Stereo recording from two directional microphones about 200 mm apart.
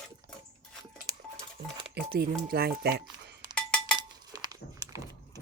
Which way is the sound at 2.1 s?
50° right (ahead or behind).